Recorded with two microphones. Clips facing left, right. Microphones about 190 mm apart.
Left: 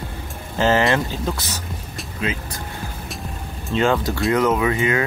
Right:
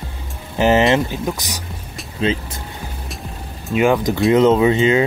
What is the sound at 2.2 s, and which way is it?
Speech, 30° right (ahead or behind).